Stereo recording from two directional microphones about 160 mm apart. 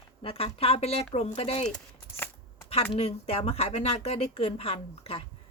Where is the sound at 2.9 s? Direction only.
40° left (ahead or behind).